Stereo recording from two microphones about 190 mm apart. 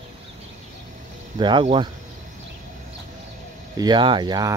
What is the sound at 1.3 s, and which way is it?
Speech, 25° right (ahead or behind).